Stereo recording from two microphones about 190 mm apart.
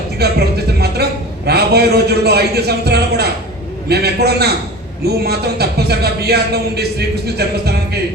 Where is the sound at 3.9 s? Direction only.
55° right (ahead or behind).